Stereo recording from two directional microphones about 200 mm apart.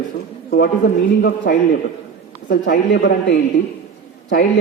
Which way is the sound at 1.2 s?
50° left (ahead or behind).